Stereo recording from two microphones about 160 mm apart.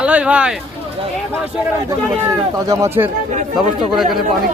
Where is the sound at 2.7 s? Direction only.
15° right (ahead or behind).